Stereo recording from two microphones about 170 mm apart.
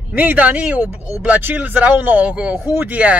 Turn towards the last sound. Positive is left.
turn(degrees=-10)  # may be behind; listen again after turning